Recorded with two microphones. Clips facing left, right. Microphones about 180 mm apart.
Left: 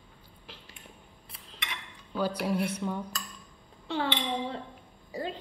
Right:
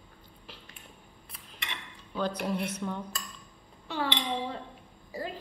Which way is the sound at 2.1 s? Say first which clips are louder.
Left 2 dB; 10° left (ahead or behind).